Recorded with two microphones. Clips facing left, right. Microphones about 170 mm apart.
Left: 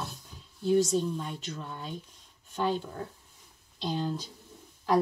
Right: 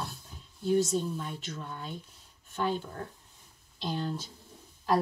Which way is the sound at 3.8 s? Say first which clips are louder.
Left 2 dB; 15° left (ahead or behind).